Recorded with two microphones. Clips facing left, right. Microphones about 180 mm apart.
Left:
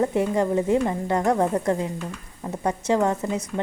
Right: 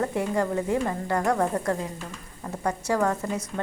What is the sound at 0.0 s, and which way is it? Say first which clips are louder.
A woman's voice: left 4 dB; 20° left (ahead or behind).